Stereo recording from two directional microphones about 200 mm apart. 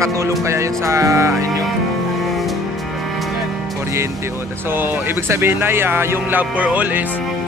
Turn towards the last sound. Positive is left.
turn(degrees=-10)  # may be behind; listen again after turning